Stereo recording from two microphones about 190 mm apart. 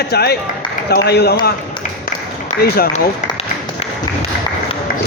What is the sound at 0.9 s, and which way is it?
Speech, 55° left (ahead or behind).